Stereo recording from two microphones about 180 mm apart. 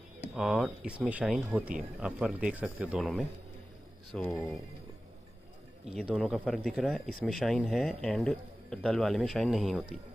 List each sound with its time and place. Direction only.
0.4 s speech: 5° right (ahead or behind)
5.9 s speech: centre (ahead or behind)